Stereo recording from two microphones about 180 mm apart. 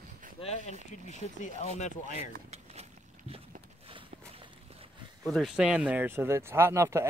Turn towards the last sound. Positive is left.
turn(degrees=-15)  # may be behind; listen again after turning